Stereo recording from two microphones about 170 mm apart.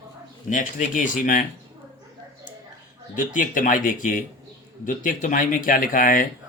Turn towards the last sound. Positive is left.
turn(degrees=50)  # may be behind; listen again after turning